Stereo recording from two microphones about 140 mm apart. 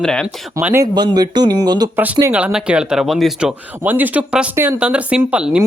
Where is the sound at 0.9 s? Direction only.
30° right (ahead or behind).